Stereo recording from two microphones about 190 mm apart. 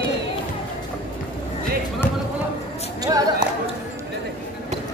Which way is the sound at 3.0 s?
20° right (ahead or behind).